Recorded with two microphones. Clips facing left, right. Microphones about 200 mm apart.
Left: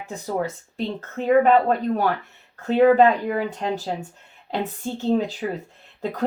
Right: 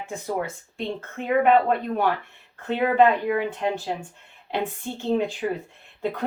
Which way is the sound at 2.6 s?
40° left (ahead or behind).